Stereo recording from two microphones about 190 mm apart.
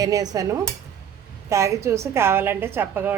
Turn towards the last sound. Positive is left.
turn(degrees=-10)  # may be behind; listen again after turning